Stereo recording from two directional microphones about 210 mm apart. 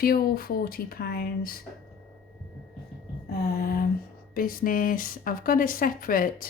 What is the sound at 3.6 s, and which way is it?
Speech, 45° left (ahead or behind).